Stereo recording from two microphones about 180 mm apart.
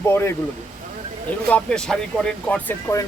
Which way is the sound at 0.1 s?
15° left (ahead or behind).